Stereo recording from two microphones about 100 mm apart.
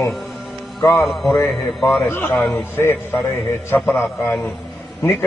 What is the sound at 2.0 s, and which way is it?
A man's voice, 20° left (ahead or behind).